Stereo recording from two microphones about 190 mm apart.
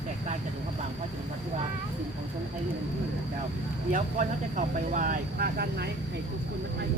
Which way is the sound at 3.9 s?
40° right (ahead or behind).